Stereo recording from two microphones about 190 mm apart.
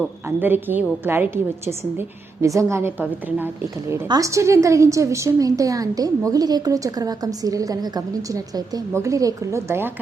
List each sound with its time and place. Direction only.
0.3 s a woman's voice: 10° right (ahead or behind)